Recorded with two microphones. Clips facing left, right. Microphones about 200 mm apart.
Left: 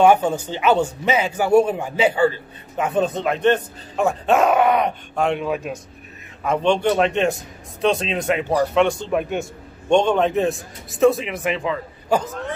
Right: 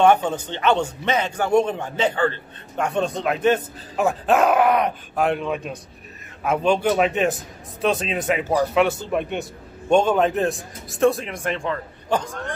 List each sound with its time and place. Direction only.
0.0 s a man's voice: 10° left (ahead or behind)